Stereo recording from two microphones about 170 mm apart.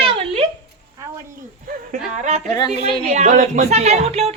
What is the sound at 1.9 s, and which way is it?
Speech, 45° right (ahead or behind).